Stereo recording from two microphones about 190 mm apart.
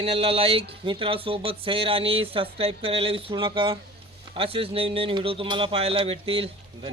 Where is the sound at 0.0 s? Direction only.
30° right (ahead or behind).